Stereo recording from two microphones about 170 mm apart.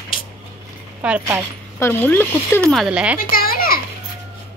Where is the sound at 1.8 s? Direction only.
10° left (ahead or behind).